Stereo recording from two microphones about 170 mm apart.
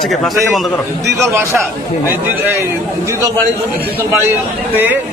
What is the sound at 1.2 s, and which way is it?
Speech, 15° right (ahead or behind).